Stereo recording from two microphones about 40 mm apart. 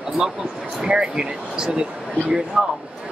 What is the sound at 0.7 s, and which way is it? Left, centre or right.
Speech, centre.